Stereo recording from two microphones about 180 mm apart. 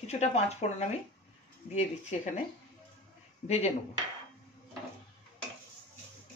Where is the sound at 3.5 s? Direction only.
35° left (ahead or behind).